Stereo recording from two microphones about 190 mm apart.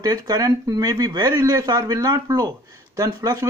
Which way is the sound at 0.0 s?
20° right (ahead or behind).